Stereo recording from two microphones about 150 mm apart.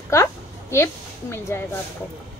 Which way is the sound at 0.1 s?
20° left (ahead or behind).